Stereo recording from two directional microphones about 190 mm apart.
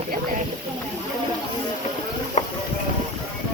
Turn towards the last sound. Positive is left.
turn(degrees=40)  # may be behind; listen again after turning